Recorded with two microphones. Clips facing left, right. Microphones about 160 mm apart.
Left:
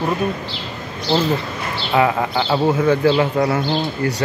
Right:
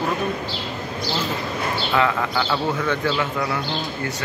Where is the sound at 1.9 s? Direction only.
25° left (ahead or behind).